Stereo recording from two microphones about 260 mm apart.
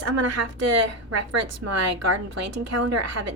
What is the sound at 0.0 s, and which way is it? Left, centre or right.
A woman's voice, right.